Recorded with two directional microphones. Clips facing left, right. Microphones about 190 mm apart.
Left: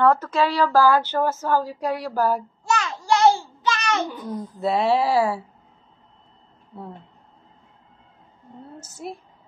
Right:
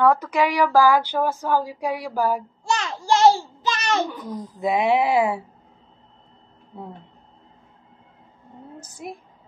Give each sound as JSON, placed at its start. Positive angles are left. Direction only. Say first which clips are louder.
{"t": 0.0, "sound": "speech", "louder": "even", "side_deg": -15}
{"t": 2.8, "sound": "child singing", "louder": "right 2 dB", "side_deg": -30}
{"t": 4.2, "sound": "speech", "louder": "left 1 dB", "side_deg": -15}
{"t": 8.7, "sound": "a woman's voice", "louder": "left 1 dB", "side_deg": -15}